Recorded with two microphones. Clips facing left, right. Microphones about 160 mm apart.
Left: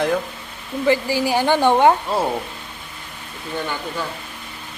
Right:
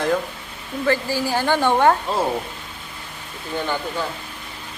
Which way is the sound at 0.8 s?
15° left (ahead or behind).